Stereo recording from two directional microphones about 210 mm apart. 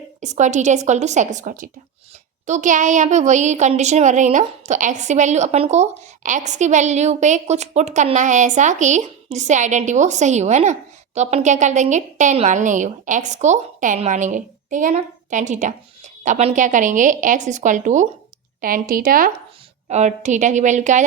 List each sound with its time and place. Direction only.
0.2 s a woman's voice: 35° right (ahead or behind)